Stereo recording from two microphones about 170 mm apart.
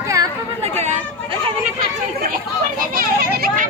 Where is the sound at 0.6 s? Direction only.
40° right (ahead or behind).